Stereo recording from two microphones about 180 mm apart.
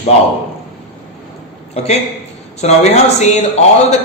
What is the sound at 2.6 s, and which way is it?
Speech, 40° left (ahead or behind).